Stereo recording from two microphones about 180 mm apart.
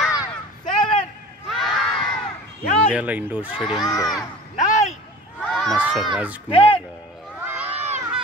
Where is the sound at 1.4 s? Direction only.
Centre (ahead or behind).